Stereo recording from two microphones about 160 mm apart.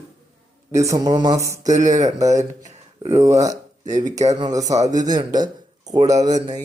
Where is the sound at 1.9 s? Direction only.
20° right (ahead or behind).